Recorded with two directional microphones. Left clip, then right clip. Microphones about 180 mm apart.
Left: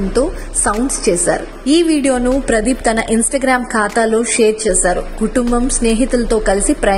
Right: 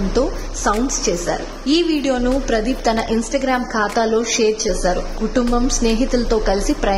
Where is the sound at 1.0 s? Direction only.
25° left (ahead or behind).